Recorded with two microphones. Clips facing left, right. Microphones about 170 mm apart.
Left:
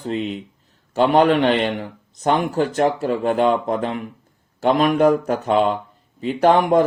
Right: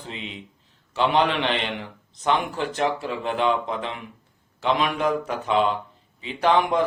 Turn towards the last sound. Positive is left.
turn(degrees=45)  # may be behind; listen again after turning